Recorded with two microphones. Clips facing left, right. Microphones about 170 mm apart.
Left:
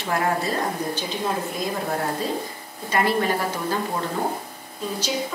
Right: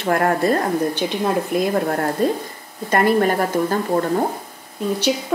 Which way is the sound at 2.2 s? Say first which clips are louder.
Right 7 dB; 55° right (ahead or behind).